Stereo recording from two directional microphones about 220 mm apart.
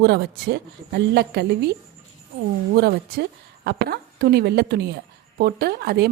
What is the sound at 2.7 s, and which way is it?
A woman's voice, 45° right (ahead or behind).